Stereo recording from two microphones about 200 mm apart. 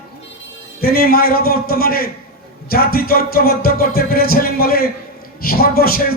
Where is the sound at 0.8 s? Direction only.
50° left (ahead or behind).